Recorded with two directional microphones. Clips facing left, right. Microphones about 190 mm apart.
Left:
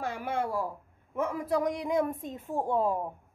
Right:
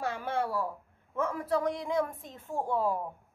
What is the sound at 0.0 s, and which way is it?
A woman's voice, 15° left (ahead or behind).